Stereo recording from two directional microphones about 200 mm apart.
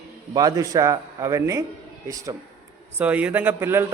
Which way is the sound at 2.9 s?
5° right (ahead or behind).